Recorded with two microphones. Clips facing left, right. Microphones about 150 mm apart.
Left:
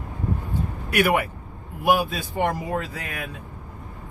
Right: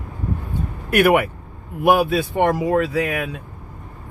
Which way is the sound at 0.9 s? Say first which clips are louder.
Right 6 dB; 55° right (ahead or behind).